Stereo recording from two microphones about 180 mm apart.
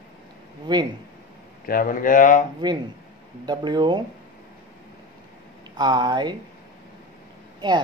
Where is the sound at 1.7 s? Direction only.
50° left (ahead or behind).